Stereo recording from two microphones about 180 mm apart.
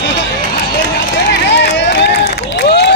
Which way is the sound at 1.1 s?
75° left (ahead or behind).